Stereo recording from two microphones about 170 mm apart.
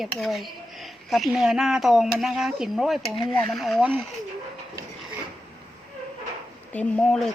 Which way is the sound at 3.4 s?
Centre (ahead or behind).